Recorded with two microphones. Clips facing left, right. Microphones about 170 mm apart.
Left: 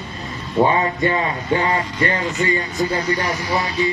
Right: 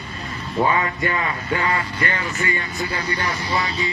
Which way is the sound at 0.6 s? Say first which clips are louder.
Left 4 dB; 30° left (ahead or behind).